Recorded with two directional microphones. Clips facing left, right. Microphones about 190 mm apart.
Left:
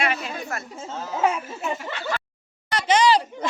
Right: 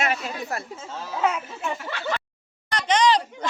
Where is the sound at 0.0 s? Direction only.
40° right (ahead or behind).